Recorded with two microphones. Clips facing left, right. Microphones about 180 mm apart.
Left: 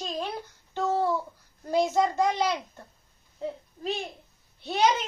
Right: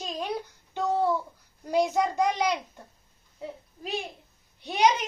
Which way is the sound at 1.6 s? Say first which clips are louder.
Left 1 dB; 15° right (ahead or behind).